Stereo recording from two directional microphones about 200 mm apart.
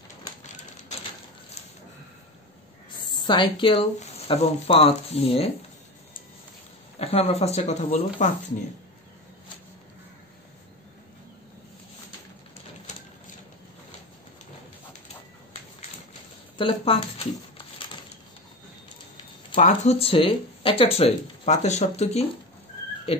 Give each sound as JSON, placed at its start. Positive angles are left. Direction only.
{"t": 3.1, "sound": "speech", "side_deg": 20}
{"t": 7.0, "sound": "speech", "side_deg": 30}
{"t": 16.5, "sound": "speech", "side_deg": 25}
{"t": 19.5, "sound": "speech", "side_deg": 35}